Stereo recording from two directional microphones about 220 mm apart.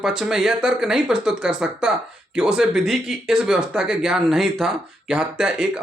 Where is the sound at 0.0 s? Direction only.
Centre (ahead or behind).